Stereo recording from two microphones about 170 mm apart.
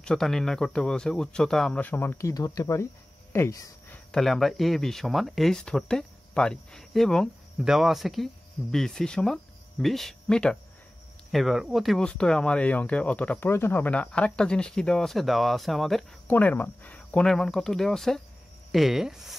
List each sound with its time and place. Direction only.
0.0 s speech: 5° left (ahead or behind)
4.1 s speech: centre (ahead or behind)